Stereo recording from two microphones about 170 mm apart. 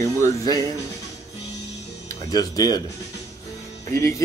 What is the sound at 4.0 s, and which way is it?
Speech, 15° left (ahead or behind).